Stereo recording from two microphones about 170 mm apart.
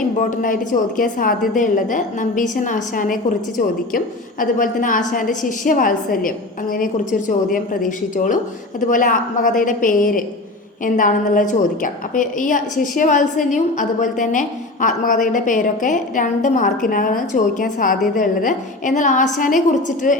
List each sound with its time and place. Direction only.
0.2 s a woman's voice: 50° left (ahead or behind)